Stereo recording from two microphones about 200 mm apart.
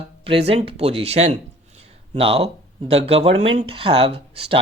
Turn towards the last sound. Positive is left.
turn(degrees=-25)  # may be behind; listen again after turning